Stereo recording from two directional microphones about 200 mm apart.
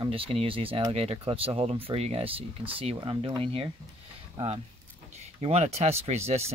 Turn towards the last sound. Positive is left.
turn(degrees=-30)  # may be behind; listen again after turning